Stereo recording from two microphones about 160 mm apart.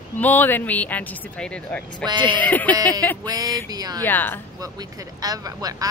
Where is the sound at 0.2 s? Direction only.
10° left (ahead or behind).